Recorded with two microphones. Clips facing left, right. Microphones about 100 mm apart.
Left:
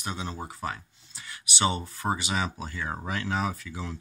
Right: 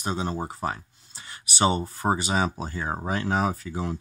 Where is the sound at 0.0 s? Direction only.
40° right (ahead or behind).